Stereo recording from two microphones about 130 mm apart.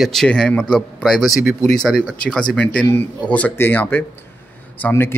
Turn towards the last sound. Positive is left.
turn(degrees=20)  # may be behind; listen again after turning